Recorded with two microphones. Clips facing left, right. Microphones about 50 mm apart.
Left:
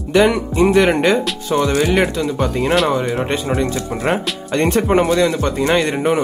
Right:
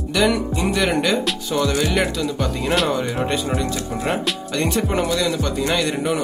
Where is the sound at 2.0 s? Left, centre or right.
Centre.